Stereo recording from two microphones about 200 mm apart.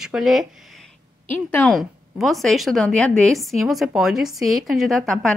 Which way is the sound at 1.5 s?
5° left (ahead or behind).